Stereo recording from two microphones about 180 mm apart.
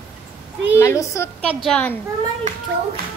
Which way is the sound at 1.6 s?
5° left (ahead or behind).